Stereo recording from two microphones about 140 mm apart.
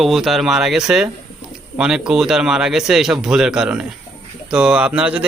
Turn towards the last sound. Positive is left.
turn(degrees=-10)  # may be behind; listen again after turning